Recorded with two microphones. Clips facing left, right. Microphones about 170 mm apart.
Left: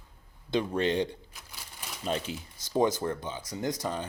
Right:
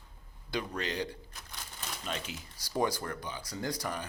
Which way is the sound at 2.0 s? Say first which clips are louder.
Left 8 dB; 35° left (ahead or behind).